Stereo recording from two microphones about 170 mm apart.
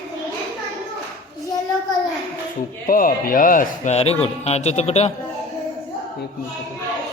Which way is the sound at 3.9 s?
35° left (ahead or behind).